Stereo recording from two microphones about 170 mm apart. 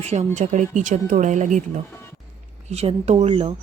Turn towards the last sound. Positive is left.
turn(degrees=-35)  # may be behind; listen again after turning